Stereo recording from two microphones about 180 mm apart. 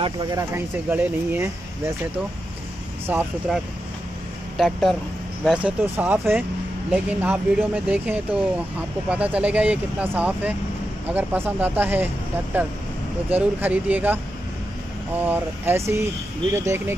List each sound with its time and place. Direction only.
0.0 s speech: 25° right (ahead or behind)
3.1 s speech: 5° right (ahead or behind)
13.3 s speech: 10° right (ahead or behind)